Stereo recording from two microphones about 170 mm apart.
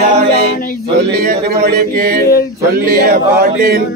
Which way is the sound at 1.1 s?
65° right (ahead or behind).